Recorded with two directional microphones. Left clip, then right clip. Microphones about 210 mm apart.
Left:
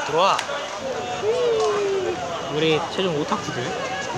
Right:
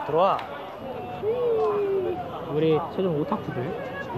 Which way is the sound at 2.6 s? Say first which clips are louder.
Left 2 dB; 5° right (ahead or behind).